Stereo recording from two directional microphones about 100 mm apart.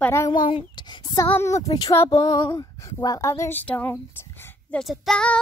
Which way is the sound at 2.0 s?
45° left (ahead or behind).